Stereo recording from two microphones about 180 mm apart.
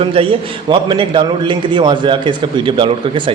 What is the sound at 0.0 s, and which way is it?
A man's voice, 30° right (ahead or behind).